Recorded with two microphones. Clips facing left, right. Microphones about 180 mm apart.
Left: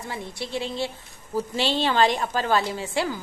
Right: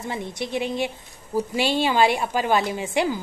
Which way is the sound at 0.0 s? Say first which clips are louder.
Right 4 dB; 20° right (ahead or behind).